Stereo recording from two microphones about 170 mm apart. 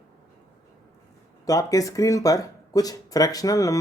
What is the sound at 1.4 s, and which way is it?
Speech, 20° left (ahead or behind).